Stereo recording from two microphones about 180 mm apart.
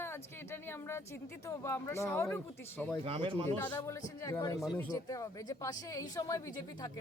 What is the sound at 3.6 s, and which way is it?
Speech, 10° left (ahead or behind).